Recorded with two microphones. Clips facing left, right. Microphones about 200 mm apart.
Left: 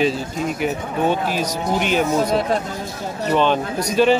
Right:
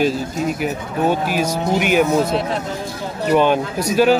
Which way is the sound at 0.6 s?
10° right (ahead or behind).